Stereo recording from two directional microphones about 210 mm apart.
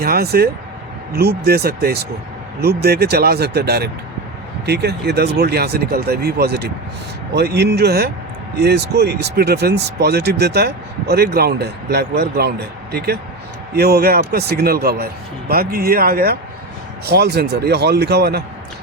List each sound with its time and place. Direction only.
0.0 s a man's voice: 50° right (ahead or behind)